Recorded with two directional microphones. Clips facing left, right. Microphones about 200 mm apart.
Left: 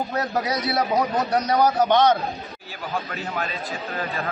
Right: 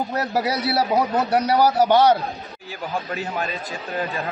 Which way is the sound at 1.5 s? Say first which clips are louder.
Right 2 dB; 10° right (ahead or behind).